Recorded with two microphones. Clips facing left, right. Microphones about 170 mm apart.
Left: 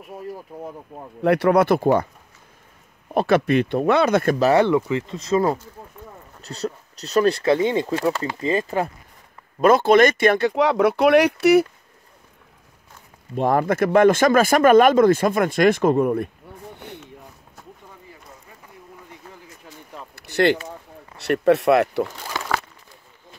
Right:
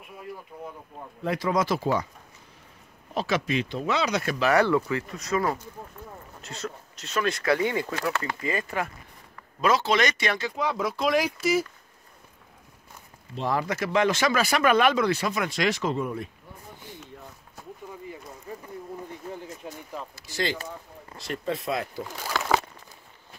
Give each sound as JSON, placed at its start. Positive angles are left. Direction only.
{"t": 0.5, "sound": "speech", "side_deg": 45}
{"t": 1.2, "sound": "speech", "side_deg": 65}
{"t": 3.2, "sound": "speech", "side_deg": 55}
{"t": 4.5, "sound": "speech", "side_deg": 20}
{"t": 6.4, "sound": "speech", "side_deg": 35}
{"t": 9.6, "sound": "speech", "side_deg": 50}
{"t": 13.3, "sound": "speech", "side_deg": 50}
{"t": 19.6, "sound": "a sound", "side_deg": -20}
{"t": 20.2, "sound": "speech", "side_deg": 65}